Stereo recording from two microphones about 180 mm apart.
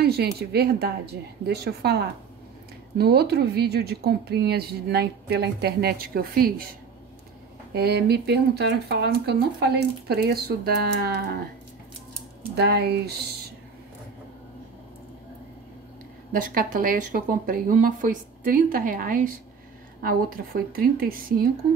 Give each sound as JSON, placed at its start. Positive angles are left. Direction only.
{"t": 0.0, "sound": "speech", "side_deg": -60}
{"t": 7.7, "sound": "speech", "side_deg": -65}
{"t": 12.5, "sound": "speech", "side_deg": -65}
{"t": 16.3, "sound": "speech", "side_deg": -50}